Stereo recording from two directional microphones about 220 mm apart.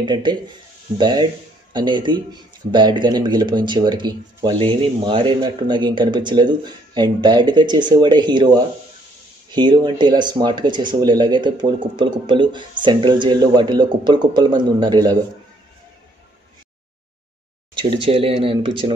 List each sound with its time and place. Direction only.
0.0 s speech: 20° right (ahead or behind)
9.5 s speech: 20° right (ahead or behind)
18.0 s speech: 25° right (ahead or behind)